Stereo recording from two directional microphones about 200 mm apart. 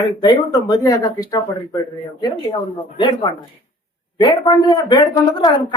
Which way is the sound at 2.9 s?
20° left (ahead or behind).